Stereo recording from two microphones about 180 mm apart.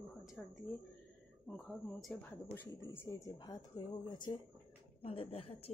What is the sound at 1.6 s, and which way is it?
Speech, 5° left (ahead or behind).